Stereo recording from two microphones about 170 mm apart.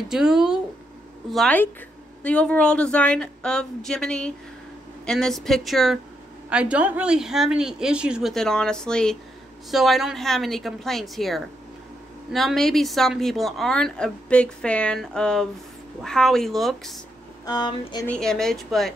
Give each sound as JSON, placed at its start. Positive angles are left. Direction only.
{"t": 0.1, "sound": "speech", "side_deg": -5}
{"t": 17.5, "sound": "speech", "side_deg": 25}
{"t": 18.0, "sound": "speech", "side_deg": 5}